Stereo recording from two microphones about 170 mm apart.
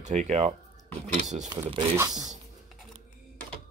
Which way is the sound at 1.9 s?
20° right (ahead or behind).